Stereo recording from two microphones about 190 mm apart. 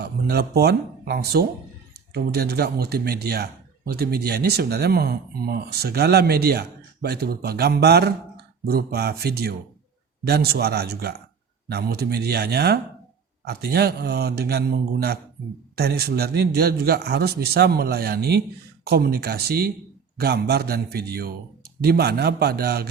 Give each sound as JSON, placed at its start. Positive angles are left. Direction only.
{"t": 0.0, "sound": "speech", "side_deg": -55}